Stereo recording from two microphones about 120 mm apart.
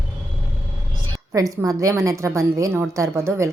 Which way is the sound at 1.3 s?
30° right (ahead or behind).